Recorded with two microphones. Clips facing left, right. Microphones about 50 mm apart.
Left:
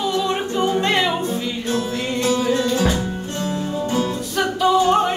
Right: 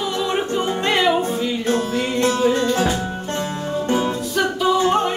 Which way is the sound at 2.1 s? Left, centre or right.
Right.